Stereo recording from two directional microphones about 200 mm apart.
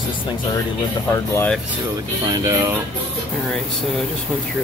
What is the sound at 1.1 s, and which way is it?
Speech, 10° left (ahead or behind).